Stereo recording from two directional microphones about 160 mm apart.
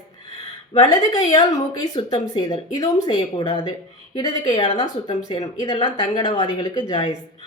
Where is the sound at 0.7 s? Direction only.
25° left (ahead or behind).